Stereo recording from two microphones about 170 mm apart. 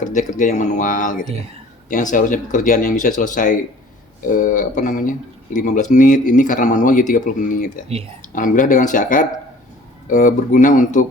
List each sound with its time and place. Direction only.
0.0 s speech: 50° left (ahead or behind)